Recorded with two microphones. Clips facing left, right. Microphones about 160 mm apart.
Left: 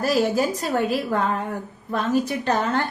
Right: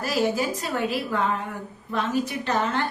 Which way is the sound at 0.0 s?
40° left (ahead or behind).